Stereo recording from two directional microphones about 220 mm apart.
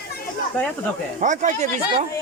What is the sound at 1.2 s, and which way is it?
Speech, 35° right (ahead or behind).